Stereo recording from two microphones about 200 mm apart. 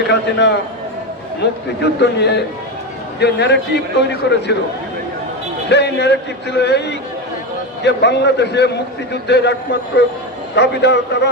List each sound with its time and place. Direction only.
0.1 s a man's voice: 60° left (ahead or behind)
5.6 s a man's voice: 60° left (ahead or behind)